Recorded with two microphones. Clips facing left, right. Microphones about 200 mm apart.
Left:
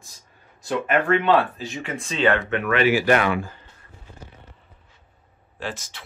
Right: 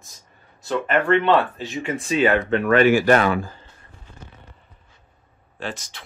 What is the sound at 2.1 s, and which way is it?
Speech, 15° right (ahead or behind).